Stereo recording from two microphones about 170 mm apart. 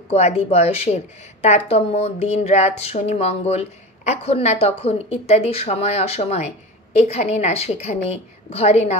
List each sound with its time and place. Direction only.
0.1 s a woman's voice: 40° left (ahead or behind)